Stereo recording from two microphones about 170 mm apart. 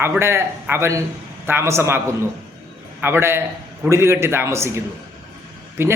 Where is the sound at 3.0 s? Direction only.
15° right (ahead or behind).